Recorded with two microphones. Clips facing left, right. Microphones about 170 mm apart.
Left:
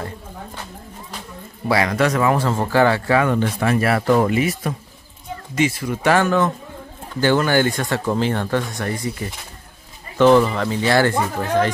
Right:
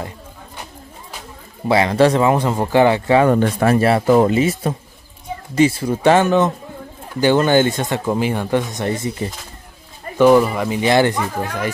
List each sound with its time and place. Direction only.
1.7 s speech: 25° right (ahead or behind)
3.3 s speech: 45° right (ahead or behind)
3.7 s speech: 25° right (ahead or behind)
10.1 s speech: 10° right (ahead or behind)